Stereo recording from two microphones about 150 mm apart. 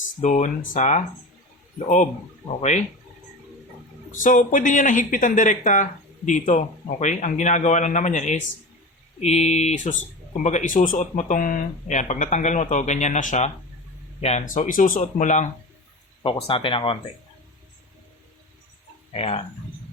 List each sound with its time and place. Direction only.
0.2 s speech: 50° left (ahead or behind)
2.5 s speech: 50° left (ahead or behind)
4.1 s speech: 60° left (ahead or behind)
15.0 s speech: 55° left (ahead or behind)
16.2 s speech: 35° left (ahead or behind)
19.1 s speech: 40° left (ahead or behind)